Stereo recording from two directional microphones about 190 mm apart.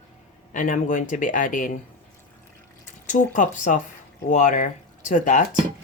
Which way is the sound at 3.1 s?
40° left (ahead or behind).